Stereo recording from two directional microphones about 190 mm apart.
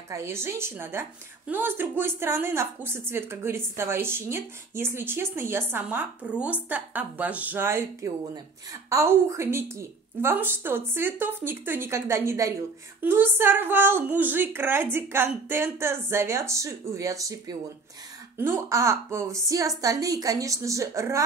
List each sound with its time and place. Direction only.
0.1 s a woman's voice: 15° right (ahead or behind)